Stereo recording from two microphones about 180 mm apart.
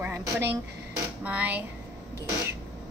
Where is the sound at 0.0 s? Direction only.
10° right (ahead or behind).